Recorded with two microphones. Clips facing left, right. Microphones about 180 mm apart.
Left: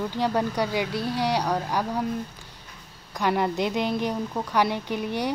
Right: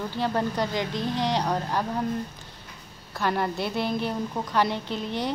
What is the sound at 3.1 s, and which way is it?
Speech, 15° left (ahead or behind).